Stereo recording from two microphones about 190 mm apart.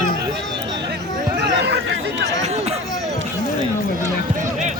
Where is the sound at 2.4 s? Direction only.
35° right (ahead or behind).